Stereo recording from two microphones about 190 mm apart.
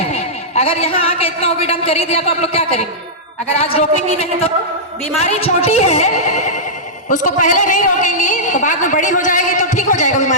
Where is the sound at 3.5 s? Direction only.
30° left (ahead or behind).